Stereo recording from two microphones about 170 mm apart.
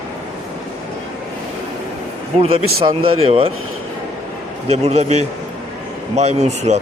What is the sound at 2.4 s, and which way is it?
Speech, 35° right (ahead or behind).